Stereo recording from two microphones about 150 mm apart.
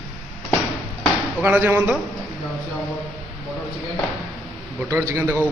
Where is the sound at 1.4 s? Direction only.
10° right (ahead or behind).